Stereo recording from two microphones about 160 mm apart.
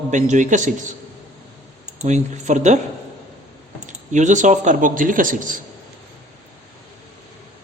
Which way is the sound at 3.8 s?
50° right (ahead or behind).